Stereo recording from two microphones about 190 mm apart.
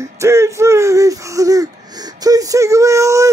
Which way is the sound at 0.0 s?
15° right (ahead or behind).